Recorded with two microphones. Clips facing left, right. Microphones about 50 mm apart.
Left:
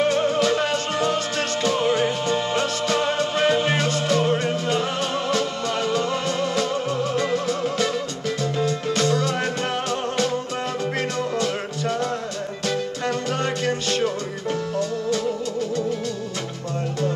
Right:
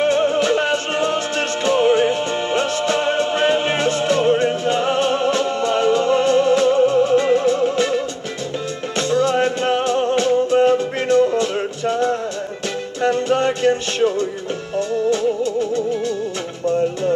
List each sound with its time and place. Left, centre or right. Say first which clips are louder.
0.0 s music: right 3 dB; right